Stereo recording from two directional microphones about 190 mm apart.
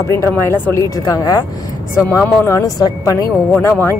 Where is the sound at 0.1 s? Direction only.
15° left (ahead or behind).